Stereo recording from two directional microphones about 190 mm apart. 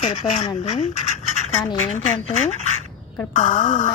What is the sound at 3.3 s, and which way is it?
Speech, 45° left (ahead or behind).